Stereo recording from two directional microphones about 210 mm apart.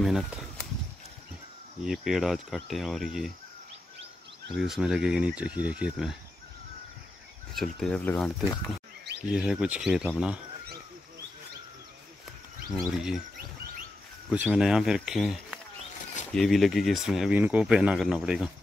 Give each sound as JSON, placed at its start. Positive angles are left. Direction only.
{"t": 0.0, "sound": "speech", "side_deg": 0}
{"t": 1.9, "sound": "speech", "side_deg": 0}
{"t": 4.6, "sound": "speech", "side_deg": 0}
{"t": 7.5, "sound": "speech", "side_deg": 0}
{"t": 12.9, "sound": "speech", "side_deg": 0}
{"t": 14.3, "sound": "speech", "side_deg": -5}